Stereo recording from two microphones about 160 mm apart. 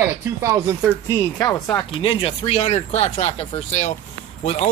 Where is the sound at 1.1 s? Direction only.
20° left (ahead or behind).